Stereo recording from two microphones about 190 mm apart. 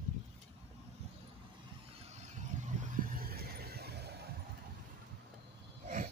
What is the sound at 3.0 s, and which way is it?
Vehicle, 50° right (ahead or behind).